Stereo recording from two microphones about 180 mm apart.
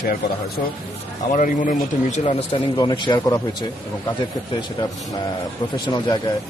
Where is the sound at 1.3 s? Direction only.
45° left (ahead or behind).